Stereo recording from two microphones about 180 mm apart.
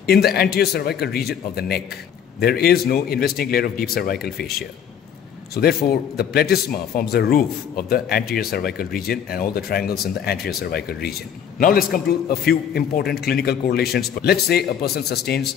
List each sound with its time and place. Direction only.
0.0 s speech: 60° left (ahead or behind)
5.6 s speech: 60° left (ahead or behind)